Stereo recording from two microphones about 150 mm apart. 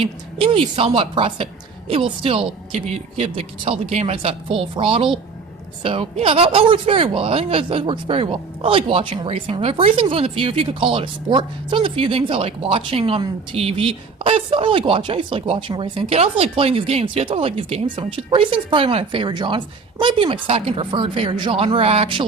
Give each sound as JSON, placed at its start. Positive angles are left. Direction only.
{"t": 0.0, "sound": "speech", "side_deg": -35}